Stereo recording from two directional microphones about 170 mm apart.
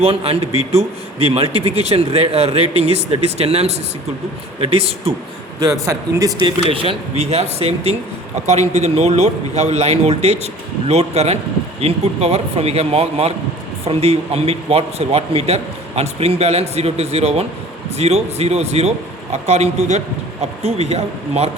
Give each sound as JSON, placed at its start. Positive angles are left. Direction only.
{"t": 0.0, "sound": "a man's voice", "side_deg": -35}
{"t": 5.8, "sound": "speech", "side_deg": -20}
{"t": 6.7, "sound": "a man's voice", "side_deg": -35}
{"t": 8.4, "sound": "a man's voice", "side_deg": -40}